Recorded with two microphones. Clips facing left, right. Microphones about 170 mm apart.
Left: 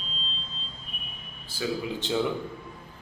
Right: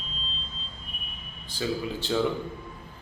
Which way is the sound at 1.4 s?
5° left (ahead or behind).